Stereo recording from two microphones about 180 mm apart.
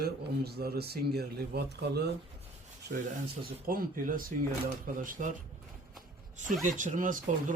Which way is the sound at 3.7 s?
50° right (ahead or behind).